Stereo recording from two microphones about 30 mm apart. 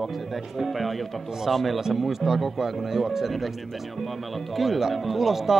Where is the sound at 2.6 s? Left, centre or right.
Centre.